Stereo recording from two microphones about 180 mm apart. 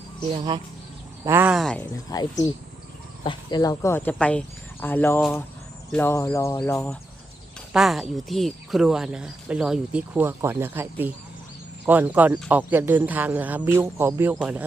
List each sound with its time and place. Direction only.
1.2 s a man's voice: 15° right (ahead or behind)
1.8 s a man's voice: 20° left (ahead or behind); by 14.3 s 10° right (ahead or behind)